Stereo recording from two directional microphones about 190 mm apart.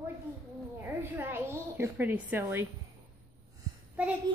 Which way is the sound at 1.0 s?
10° right (ahead or behind).